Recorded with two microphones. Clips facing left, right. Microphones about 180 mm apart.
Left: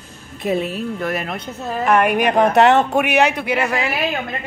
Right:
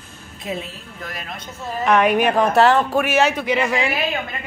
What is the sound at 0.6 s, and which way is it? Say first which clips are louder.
Speech: left 12 dB; 65° left (ahead or behind).